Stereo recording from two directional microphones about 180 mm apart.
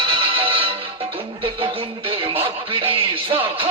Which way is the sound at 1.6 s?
30° right (ahead or behind).